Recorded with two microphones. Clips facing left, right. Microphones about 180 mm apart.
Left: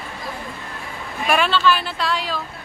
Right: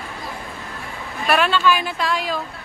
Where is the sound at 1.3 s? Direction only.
5° right (ahead or behind).